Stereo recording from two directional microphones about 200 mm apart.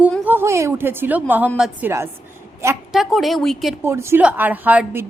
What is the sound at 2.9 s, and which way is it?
Speech, centre (ahead or behind).